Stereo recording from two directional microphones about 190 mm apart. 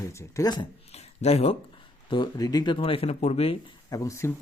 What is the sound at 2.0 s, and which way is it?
Speech, 25° left (ahead or behind).